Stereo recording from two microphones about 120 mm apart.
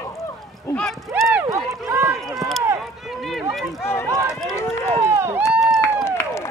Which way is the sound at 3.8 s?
20° left (ahead or behind).